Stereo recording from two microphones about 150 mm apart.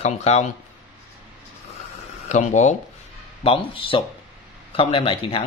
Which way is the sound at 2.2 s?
55° left (ahead or behind).